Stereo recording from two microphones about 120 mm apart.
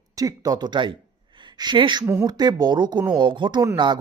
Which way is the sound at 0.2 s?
30° right (ahead or behind).